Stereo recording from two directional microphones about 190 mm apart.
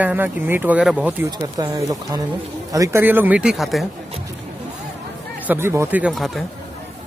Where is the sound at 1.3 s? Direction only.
20° right (ahead or behind); by 3.9 s centre (ahead or behind).